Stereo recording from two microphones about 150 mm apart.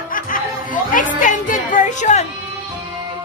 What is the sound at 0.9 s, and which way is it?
Music, 60° left (ahead or behind).